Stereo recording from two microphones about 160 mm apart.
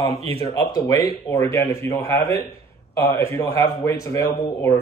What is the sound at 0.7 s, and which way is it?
A man's voice, 25° left (ahead or behind).